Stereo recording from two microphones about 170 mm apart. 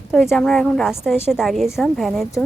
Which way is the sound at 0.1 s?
Centre (ahead or behind).